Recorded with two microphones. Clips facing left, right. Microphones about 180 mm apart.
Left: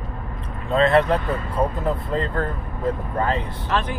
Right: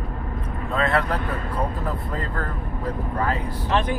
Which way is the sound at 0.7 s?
25° left (ahead or behind).